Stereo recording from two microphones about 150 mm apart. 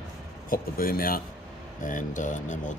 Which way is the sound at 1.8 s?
60° left (ahead or behind).